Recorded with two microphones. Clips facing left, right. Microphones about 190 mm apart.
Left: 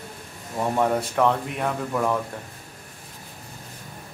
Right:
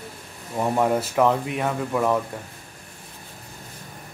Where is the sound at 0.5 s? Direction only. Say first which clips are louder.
Right 1 dB; 5° right (ahead or behind).